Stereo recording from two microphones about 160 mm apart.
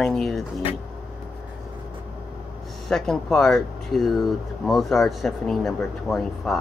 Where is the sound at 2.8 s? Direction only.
5° left (ahead or behind).